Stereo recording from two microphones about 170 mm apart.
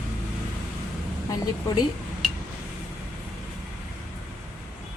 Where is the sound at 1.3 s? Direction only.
20° left (ahead or behind).